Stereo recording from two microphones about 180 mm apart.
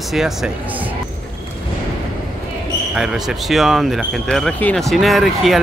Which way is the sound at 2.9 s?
5° right (ahead or behind).